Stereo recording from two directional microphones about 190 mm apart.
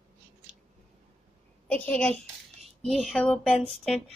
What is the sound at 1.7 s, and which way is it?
A child's voice, 5° left (ahead or behind).